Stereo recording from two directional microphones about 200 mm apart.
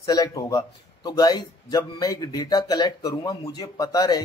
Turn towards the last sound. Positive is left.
turn(degrees=20)  # may be behind; listen again after turning